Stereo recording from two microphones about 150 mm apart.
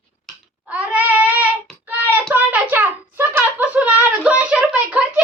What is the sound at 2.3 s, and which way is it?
Hands, 10° right (ahead or behind).